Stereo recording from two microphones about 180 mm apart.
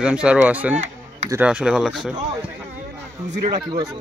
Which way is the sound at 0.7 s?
40° right (ahead or behind).